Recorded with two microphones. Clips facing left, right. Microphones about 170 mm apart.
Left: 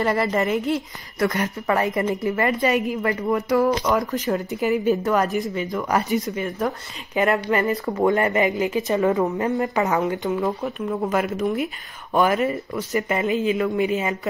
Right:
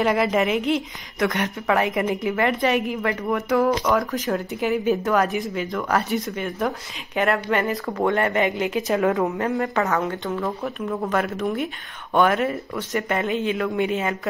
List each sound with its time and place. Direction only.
0.0 s a woman's voice: 5° right (ahead or behind)
7.8 s speech: 15° left (ahead or behind)
8.1 s a woman's voice: 5° left (ahead or behind)
10.0 s speech: 15° left (ahead or behind)
11.1 s a woman's voice: 5° left (ahead or behind)